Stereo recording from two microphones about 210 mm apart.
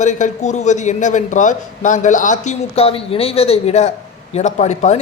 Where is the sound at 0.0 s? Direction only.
35° left (ahead or behind).